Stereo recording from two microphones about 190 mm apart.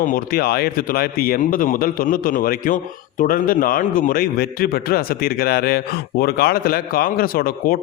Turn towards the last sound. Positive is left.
turn(degrees=50)  # may be behind; listen again after turning